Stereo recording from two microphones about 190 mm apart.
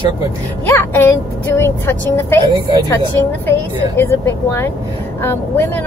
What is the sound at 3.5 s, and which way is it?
Speech, 10° left (ahead or behind).